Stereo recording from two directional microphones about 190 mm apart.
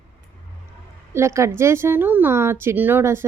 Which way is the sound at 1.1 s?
15° right (ahead or behind).